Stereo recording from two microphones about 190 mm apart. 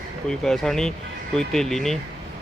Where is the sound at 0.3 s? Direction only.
5° left (ahead or behind).